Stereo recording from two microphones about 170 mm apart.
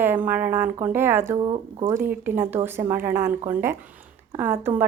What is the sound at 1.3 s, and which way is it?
Speech, 30° right (ahead or behind).